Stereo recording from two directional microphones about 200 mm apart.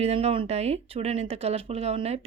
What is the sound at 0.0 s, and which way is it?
Speech, 30° right (ahead or behind).